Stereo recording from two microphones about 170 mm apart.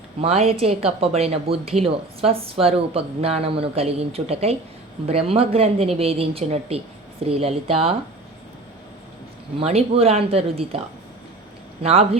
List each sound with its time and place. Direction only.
0.2 s a woman's voice: 40° right (ahead or behind)
9.6 s a woman's voice: 35° right (ahead or behind)
11.8 s a woman's voice: 35° right (ahead or behind)